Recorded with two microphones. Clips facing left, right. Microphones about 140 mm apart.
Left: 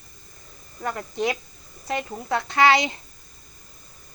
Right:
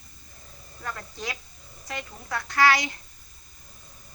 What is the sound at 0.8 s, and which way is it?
Speech, 25° left (ahead or behind).